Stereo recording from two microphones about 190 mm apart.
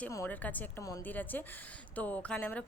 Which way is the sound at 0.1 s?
10° left (ahead or behind).